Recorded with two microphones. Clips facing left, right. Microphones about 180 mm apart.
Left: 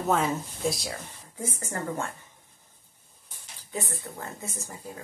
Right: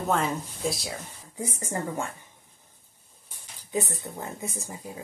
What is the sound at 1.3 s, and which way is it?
Speech, 15° right (ahead or behind).